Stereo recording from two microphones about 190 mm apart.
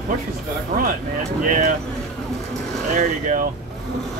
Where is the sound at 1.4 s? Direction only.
45° right (ahead or behind).